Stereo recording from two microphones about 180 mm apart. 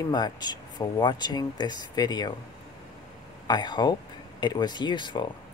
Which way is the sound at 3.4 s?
25° left (ahead or behind).